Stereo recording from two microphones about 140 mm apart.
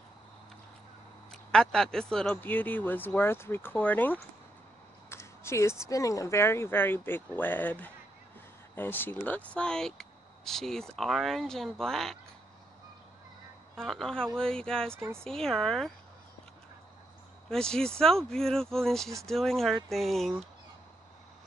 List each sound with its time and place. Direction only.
1.3 s speech: 5° left (ahead or behind)
13.7 s speech: 5° left (ahead or behind)
15.0 s speech: 15° right (ahead or behind)
15.2 s speech: 5° left (ahead or behind)
17.5 s speech: 5° left (ahead or behind)